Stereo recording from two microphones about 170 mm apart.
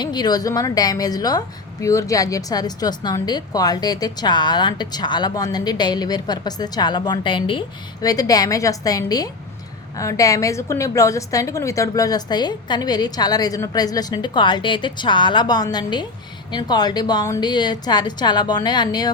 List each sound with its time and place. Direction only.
0.0 s a woman's voice: 25° left (ahead or behind)